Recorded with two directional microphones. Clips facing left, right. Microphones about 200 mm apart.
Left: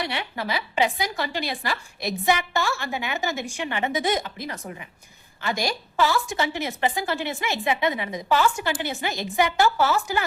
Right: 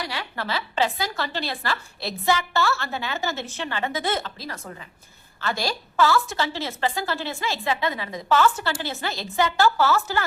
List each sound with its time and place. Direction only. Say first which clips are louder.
0.0 s a woman's voice: left 2 dB; 20° left (ahead or behind)